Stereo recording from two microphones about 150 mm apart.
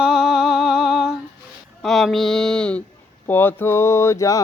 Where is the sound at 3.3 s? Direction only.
15° left (ahead or behind).